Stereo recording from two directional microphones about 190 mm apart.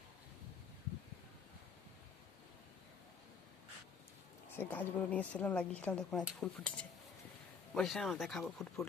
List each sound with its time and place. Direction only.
4.5 s a woman's voice: 10° left (ahead or behind)